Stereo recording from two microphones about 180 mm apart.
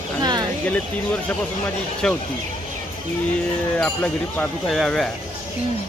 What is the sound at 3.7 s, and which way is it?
Speech, 10° left (ahead or behind).